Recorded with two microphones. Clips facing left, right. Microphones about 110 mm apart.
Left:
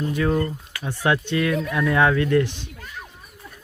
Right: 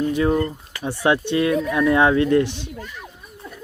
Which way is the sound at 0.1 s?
25° right (ahead or behind).